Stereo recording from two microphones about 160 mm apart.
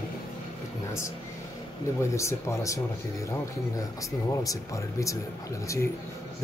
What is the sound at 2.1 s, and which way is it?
Speech, 20° left (ahead or behind).